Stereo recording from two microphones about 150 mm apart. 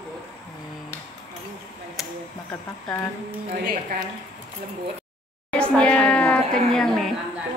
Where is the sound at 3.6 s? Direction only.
70° right (ahead or behind).